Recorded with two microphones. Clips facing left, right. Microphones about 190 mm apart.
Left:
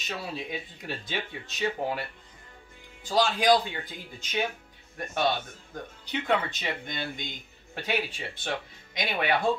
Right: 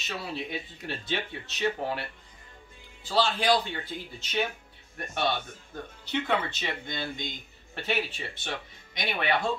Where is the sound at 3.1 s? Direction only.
15° left (ahead or behind).